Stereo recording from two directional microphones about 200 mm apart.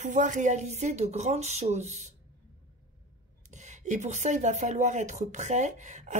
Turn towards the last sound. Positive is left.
turn(degrees=-35)  # may be behind; listen again after turning